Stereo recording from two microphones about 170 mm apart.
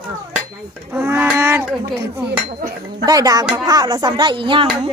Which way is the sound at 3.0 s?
20° right (ahead or behind).